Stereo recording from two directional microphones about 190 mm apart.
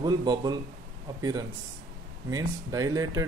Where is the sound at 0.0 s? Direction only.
20° right (ahead or behind).